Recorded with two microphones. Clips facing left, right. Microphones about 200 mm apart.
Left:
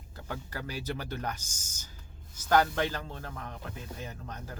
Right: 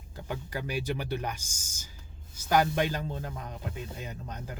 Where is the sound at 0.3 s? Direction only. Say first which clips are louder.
Right 4 dB; 15° right (ahead or behind).